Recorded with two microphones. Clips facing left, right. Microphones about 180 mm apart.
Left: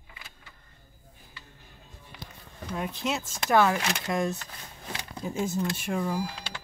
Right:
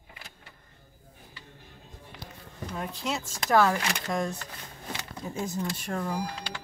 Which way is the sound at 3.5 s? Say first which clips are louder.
Even; centre (ahead or behind).